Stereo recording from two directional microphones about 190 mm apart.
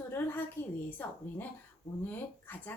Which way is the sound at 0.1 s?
10° left (ahead or behind).